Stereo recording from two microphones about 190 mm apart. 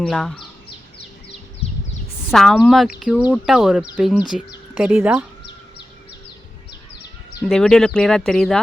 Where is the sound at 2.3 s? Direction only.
Centre (ahead or behind).